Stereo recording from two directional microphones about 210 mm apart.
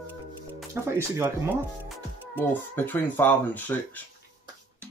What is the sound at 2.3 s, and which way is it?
Speech, 10° left (ahead or behind).